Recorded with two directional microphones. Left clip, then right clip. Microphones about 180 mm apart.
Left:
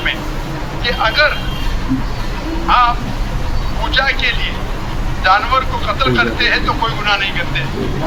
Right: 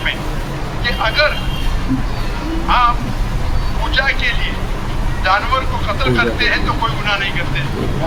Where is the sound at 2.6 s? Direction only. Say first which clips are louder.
Left 2 dB; 20° left (ahead or behind).